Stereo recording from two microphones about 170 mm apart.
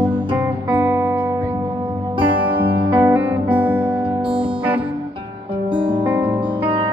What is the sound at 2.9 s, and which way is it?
Music, 10° right (ahead or behind).